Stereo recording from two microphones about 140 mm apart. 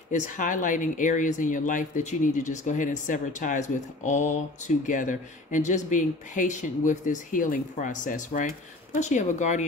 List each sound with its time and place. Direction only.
0.1 s speech: 60° left (ahead or behind)
9.0 s speech: 60° left (ahead or behind)